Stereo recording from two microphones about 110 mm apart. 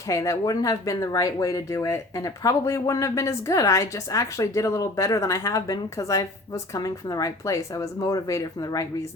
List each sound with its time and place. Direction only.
0.1 s speech: 30° left (ahead or behind)